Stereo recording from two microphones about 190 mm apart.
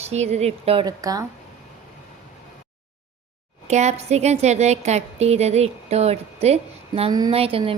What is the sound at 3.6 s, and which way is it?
A woman's voice, 35° right (ahead or behind).